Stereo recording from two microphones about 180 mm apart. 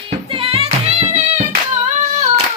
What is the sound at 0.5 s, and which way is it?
Music, 35° right (ahead or behind).